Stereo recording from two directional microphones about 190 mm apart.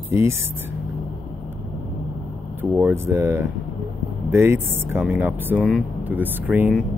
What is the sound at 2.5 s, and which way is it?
Speech, 10° right (ahead or behind).